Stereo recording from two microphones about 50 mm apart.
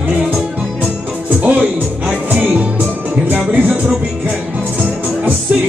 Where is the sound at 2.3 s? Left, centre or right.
Right.